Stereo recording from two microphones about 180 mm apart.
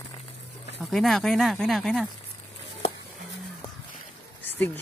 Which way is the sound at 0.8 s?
Centre (ahead or behind).